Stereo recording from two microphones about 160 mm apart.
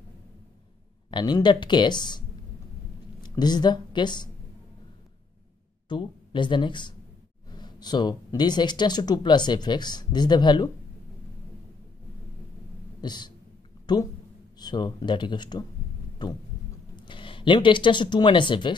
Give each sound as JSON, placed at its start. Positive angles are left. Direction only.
{"t": 1.1, "sound": "speech", "side_deg": 25}
{"t": 5.9, "sound": "speech", "side_deg": 30}
{"t": 13.0, "sound": "speech", "side_deg": 25}
{"t": 16.9, "sound": "speech", "side_deg": 30}